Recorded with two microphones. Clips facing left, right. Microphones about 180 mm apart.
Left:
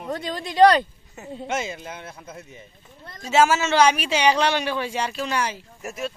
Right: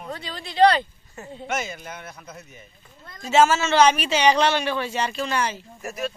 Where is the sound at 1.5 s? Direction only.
25° left (ahead or behind).